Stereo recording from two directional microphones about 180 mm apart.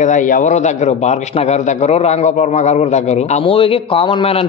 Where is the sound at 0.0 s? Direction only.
45° left (ahead or behind).